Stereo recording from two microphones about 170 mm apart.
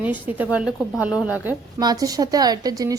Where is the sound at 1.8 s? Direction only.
20° right (ahead or behind).